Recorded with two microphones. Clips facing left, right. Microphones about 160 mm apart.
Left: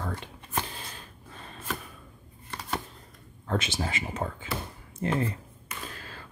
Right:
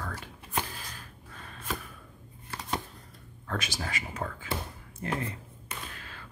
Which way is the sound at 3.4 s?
25° left (ahead or behind).